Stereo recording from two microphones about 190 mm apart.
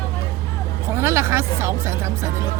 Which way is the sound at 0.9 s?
15° right (ahead or behind).